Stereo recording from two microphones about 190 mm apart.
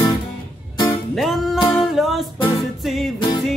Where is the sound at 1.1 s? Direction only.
Centre (ahead or behind).